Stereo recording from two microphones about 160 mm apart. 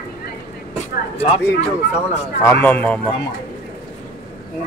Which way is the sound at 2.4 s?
15° left (ahead or behind).